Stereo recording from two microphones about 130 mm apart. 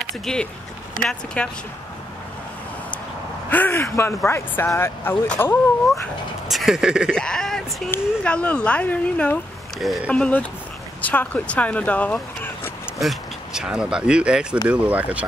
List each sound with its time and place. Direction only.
0.2 s speech: 5° left (ahead or behind)
3.4 s speech: 15° left (ahead or behind)
6.5 s speech: 5° right (ahead or behind)
7.1 s speech: 5° left (ahead or behind)
13.0 s speech: 5° right (ahead or behind)